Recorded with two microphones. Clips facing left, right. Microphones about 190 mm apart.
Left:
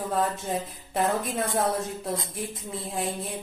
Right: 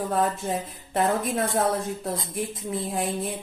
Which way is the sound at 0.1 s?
5° right (ahead or behind).